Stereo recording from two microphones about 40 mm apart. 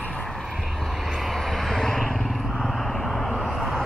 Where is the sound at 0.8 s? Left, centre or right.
Centre.